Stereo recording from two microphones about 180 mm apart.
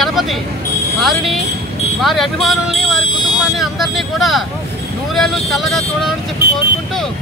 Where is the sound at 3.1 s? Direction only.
25° left (ahead or behind).